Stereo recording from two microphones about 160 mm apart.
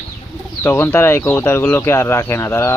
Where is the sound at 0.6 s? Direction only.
15° left (ahead or behind).